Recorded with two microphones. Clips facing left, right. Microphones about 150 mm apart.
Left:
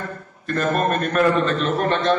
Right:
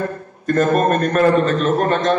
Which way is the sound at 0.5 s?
45° right (ahead or behind).